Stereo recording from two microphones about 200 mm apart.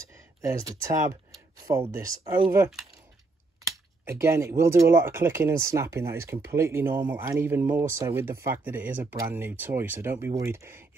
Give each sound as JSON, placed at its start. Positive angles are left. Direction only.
{"t": 0.4, "sound": "speech", "side_deg": -15}